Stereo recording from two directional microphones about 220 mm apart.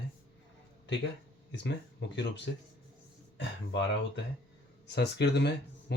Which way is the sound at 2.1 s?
50° left (ahead or behind).